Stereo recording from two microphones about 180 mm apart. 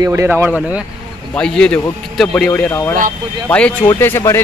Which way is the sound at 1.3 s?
5° left (ahead or behind).